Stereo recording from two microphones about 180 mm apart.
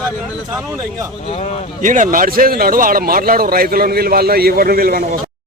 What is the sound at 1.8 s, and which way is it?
A man's voice, 45° right (ahead or behind).